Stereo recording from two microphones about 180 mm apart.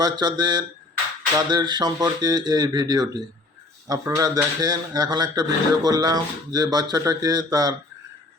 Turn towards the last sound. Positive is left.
turn(degrees=-20)  # may be behind; listen again after turning